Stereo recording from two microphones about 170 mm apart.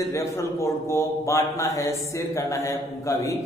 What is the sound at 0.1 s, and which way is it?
A man's voice, 15° left (ahead or behind).